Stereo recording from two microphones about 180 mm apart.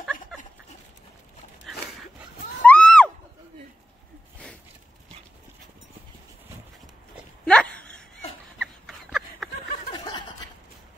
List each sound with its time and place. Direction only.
0.0 s dog: centre (ahead or behind)
1.7 s dog: centre (ahead or behind)
2.6 s a sound: 5° left (ahead or behind)
7.4 s dog: 5° left (ahead or behind)
8.5 s a sound: centre (ahead or behind)
9.9 s snicker: 25° left (ahead or behind)